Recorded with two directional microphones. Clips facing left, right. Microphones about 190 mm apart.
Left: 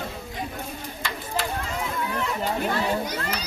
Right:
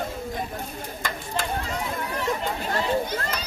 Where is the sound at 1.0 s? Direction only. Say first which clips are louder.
Right 1 dB; 50° right (ahead or behind).